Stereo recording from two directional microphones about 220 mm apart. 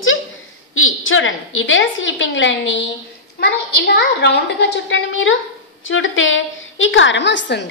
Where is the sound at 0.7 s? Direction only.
65° left (ahead or behind).